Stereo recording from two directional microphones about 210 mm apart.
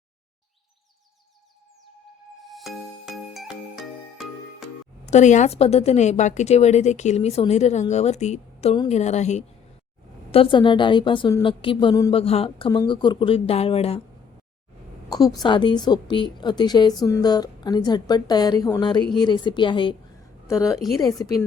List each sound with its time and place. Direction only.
2.4 s music: centre (ahead or behind)
5.1 s a woman's voice: 35° left (ahead or behind)
15.4 s a woman's voice: 20° left (ahead or behind)
21.0 s speech: 15° left (ahead or behind)